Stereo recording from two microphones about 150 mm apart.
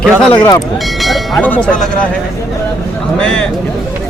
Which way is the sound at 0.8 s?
Centre (ahead or behind).